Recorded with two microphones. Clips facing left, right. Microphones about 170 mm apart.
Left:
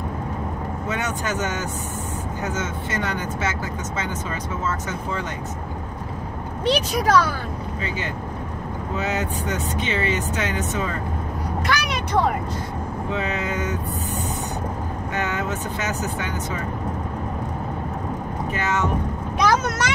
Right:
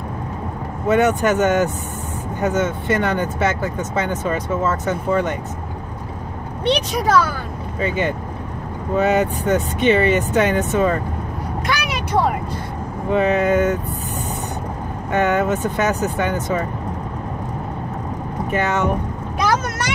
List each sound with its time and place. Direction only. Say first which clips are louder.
0.8 s speech: right 12 dB; 60° right (ahead or behind)
6.6 s speech: right 2 dB; centre (ahead or behind)
7.8 s speech: right 11 dB; 55° right (ahead or behind)
11.8 s vehicle: right 2 dB; 5° right (ahead or behind)
13.1 s speech: right 11 dB; 55° right (ahead or behind)
15.1 s speech: right 9 dB; 55° right (ahead or behind)
18.5 s speech: right 5 dB; 55° right (ahead or behind)